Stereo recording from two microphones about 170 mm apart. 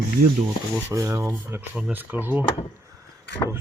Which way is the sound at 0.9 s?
15° right (ahead or behind).